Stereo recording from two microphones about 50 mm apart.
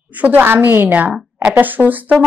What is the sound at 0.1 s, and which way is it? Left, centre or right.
Speech, right.